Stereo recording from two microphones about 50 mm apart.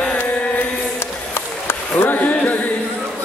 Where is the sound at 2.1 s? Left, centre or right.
Left.